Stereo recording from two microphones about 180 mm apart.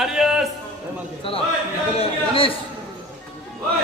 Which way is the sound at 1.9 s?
30° left (ahead or behind).